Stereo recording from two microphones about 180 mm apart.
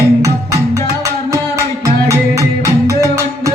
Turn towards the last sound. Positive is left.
turn(degrees=-20)  # may be behind; listen again after turning